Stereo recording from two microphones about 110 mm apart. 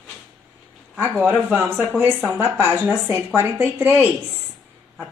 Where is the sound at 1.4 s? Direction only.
20° right (ahead or behind).